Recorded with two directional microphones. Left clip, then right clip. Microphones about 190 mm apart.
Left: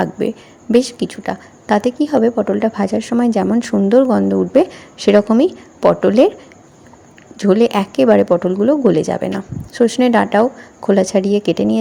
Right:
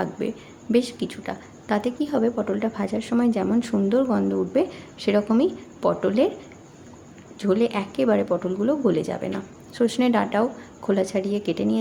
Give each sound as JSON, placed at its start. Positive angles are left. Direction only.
{"t": 0.0, "sound": "a woman's voice", "side_deg": 30}
{"t": 7.3, "sound": "a woman's voice", "side_deg": 35}